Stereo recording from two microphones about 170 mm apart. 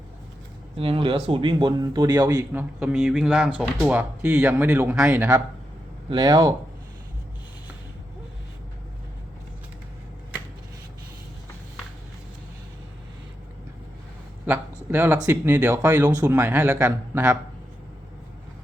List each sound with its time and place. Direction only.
0.8 s speech: 30° right (ahead or behind)
2.5 s speech: 5° right (ahead or behind)
6.1 s speech: 25° right (ahead or behind)
14.8 s speech: 15° right (ahead or behind)